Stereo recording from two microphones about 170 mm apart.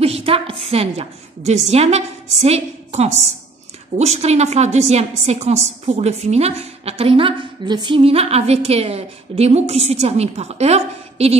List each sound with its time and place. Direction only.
0.0 s a woman's voice: 35° right (ahead or behind)